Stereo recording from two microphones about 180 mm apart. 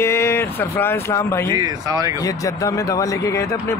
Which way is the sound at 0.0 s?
15° left (ahead or behind).